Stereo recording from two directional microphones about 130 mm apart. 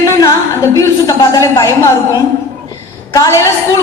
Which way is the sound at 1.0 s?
25° left (ahead or behind).